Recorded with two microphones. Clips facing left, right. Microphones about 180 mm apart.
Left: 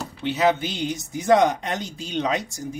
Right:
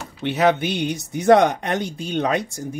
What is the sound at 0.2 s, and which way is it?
Speech, 60° right (ahead or behind).